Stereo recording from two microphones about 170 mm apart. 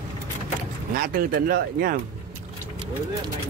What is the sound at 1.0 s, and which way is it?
Speech, 60° right (ahead or behind).